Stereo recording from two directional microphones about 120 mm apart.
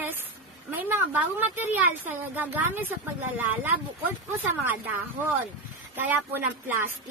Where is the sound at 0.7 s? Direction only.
20° right (ahead or behind).